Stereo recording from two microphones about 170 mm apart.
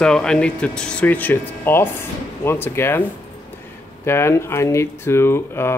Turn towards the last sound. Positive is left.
turn(degrees=15)  # may be behind; listen again after turning